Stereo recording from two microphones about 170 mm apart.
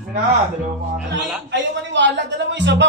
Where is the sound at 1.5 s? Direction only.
90° right.